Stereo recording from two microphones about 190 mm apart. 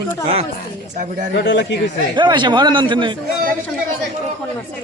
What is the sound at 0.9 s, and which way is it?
Speech, 40° right (ahead or behind).